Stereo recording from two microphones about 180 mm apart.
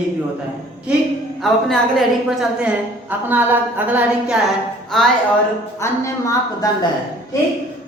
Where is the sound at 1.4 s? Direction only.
Centre (ahead or behind).